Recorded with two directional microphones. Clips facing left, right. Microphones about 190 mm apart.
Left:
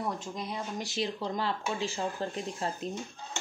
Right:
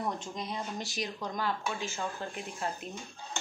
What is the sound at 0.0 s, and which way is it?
Speech, 5° left (ahead or behind).